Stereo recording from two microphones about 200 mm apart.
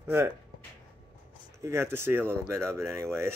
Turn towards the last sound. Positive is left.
turn(degrees=-15)  # may be behind; listen again after turning